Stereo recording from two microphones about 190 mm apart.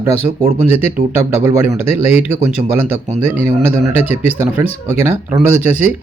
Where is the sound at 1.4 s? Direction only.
10° right (ahead or behind).